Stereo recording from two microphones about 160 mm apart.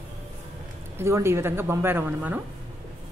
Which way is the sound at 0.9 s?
15° right (ahead or behind).